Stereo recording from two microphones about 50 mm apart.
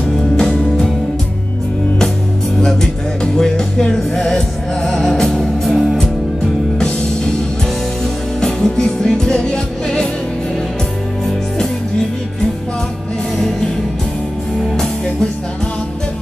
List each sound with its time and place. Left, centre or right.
0.4 s music: centre
3.3 s music: centre
8.4 s music: centre